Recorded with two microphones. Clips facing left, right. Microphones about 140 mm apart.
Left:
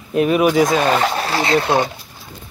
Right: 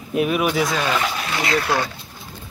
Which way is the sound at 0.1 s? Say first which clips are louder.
Left 5 dB; 5° right (ahead or behind).